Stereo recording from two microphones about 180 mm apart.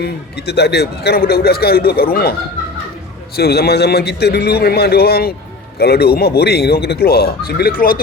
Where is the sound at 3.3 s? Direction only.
60° left (ahead or behind).